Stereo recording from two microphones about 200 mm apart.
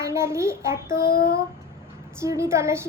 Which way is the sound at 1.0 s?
45° left (ahead or behind).